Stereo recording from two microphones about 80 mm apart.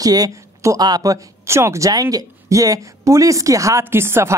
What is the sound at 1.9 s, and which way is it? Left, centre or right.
A woman's voice, right.